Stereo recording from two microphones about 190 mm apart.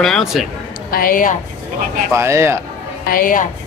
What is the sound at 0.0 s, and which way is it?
Speech, centre (ahead or behind).